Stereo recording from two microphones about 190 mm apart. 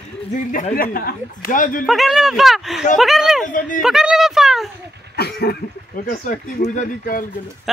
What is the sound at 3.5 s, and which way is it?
Speech, 45° left (ahead or behind).